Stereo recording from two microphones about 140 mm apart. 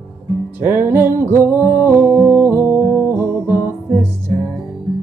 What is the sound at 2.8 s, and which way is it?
Music, 20° left (ahead or behind).